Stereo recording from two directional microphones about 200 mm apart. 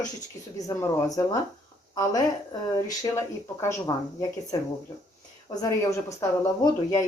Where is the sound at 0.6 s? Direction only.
15° left (ahead or behind).